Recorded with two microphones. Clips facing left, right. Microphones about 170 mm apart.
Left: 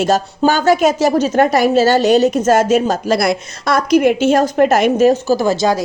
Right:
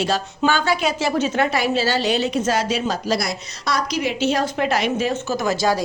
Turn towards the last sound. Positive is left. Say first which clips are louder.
# left 5 dB
turn(degrees=30)  # may be behind; listen again after turning